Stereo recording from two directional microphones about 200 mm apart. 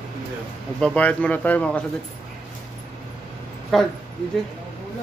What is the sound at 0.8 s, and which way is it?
Speech, 5° left (ahead or behind).